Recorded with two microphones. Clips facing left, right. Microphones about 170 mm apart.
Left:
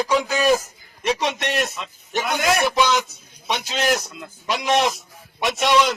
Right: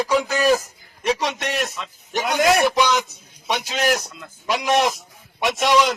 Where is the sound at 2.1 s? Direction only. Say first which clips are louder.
Right 3 dB; 15° right (ahead or behind).